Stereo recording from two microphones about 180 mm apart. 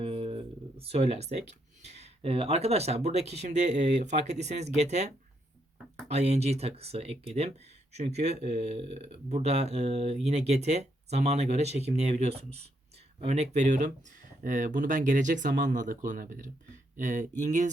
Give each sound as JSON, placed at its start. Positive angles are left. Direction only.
{"t": 0.0, "sound": "a sound", "side_deg": -30}
{"t": 1.8, "sound": "speech", "side_deg": -40}
{"t": 6.1, "sound": "speech", "side_deg": -40}